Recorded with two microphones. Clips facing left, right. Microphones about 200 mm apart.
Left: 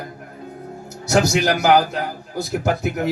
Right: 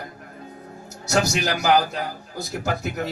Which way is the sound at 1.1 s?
60° left (ahead or behind).